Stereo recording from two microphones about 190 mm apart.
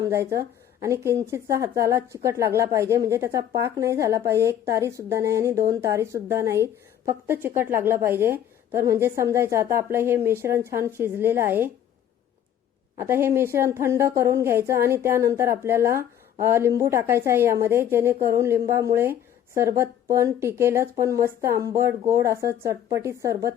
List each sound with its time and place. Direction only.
0.0 s speech: 15° right (ahead or behind)
13.0 s speech: 15° right (ahead or behind)